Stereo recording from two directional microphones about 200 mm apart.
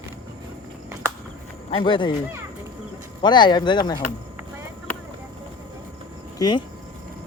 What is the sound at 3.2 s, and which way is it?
Speech, 20° left (ahead or behind).